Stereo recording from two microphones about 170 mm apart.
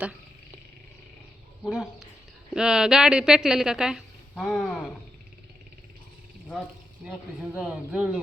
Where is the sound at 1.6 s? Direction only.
Centre (ahead or behind).